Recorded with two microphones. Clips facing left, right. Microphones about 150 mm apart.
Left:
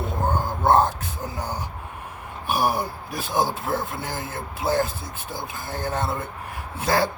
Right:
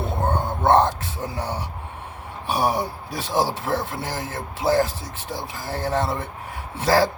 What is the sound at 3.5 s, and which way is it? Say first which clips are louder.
Speech: right 1 dB; 90° right.